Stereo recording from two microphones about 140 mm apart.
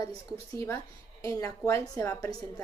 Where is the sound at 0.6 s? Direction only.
20° left (ahead or behind).